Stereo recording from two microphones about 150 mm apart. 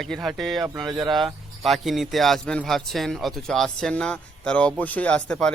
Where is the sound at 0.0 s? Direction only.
Centre (ahead or behind).